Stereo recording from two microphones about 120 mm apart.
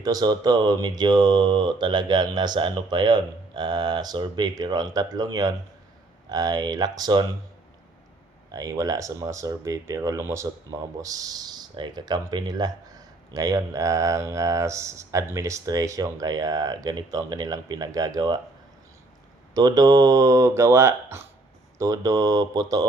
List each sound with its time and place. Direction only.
0.0 s speech: 35° right (ahead or behind)
8.5 s speech: 30° right (ahead or behind)
19.5 s speech: 30° right (ahead or behind)